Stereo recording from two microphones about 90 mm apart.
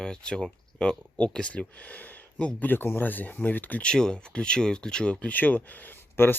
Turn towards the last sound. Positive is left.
turn(degrees=25)  # may be behind; listen again after turning